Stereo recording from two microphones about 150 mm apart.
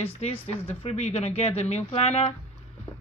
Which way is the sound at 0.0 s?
45° left (ahead or behind).